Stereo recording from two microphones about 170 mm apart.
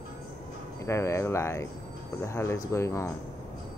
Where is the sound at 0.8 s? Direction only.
15° left (ahead or behind).